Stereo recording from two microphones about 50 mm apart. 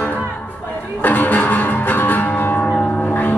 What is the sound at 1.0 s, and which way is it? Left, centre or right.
Music, left.